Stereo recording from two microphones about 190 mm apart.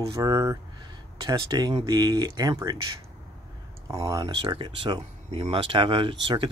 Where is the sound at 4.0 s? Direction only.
20° right (ahead or behind).